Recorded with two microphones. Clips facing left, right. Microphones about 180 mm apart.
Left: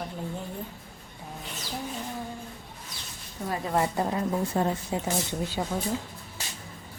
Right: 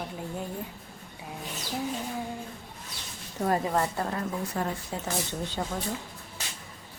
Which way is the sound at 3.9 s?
20° left (ahead or behind).